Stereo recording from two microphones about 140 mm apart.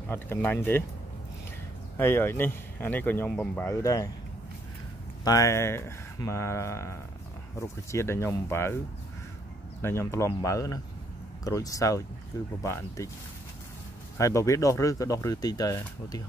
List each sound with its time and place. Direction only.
0.1 s speech: 15° left (ahead or behind)
2.0 s speech: 15° left (ahead or behind)
5.2 s speech: 25° left (ahead or behind)
9.8 s speech: 20° left (ahead or behind)
14.1 s speech: 20° left (ahead or behind)